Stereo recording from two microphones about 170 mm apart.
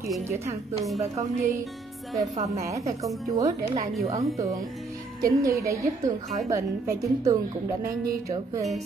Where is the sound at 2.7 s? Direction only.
20° right (ahead or behind).